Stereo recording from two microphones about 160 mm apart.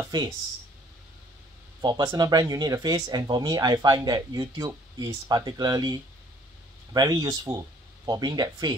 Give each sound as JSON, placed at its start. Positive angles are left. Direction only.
{"t": 1.8, "sound": "speech", "side_deg": -25}